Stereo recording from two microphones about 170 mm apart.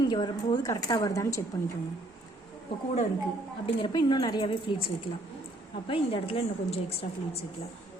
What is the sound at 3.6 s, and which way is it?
A woman's voice, 25° left (ahead or behind).